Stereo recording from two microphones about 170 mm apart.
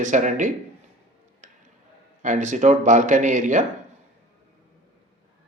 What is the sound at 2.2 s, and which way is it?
A man's voice, 45° right (ahead or behind).